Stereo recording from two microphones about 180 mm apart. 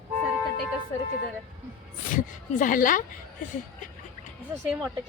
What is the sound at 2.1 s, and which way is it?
Speech, 50° left (ahead or behind).